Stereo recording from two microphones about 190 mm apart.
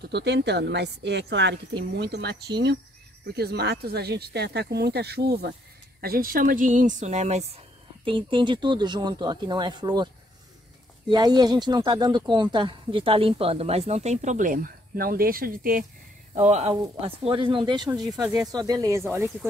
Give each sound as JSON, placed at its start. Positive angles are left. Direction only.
{"t": 0.1, "sound": "speech", "side_deg": -65}
{"t": 11.1, "sound": "speech", "side_deg": -20}
{"t": 16.3, "sound": "speech", "side_deg": -35}
{"t": 18.2, "sound": "speech", "side_deg": 0}
{"t": 18.5, "sound": "speech", "side_deg": -20}